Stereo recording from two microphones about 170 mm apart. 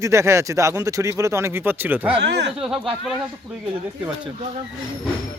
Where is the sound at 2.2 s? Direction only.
90° right.